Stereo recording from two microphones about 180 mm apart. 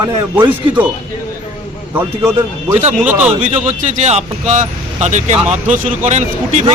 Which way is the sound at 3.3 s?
40° right (ahead or behind).